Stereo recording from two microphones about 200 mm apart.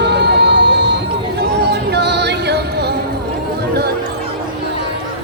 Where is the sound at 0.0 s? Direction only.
60° right (ahead or behind).